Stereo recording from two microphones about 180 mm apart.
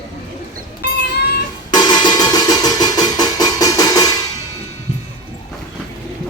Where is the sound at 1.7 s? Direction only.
25° left (ahead or behind).